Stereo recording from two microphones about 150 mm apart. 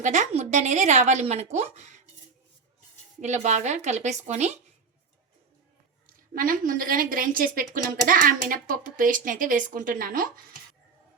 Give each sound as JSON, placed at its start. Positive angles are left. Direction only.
{"t": 0.0, "sound": "speech", "side_deg": -55}
{"t": 3.2, "sound": "speech", "side_deg": -50}
{"t": 6.1, "sound": "speech", "side_deg": -70}